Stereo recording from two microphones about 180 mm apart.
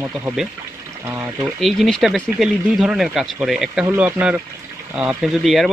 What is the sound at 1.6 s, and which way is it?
Speech, centre (ahead or behind).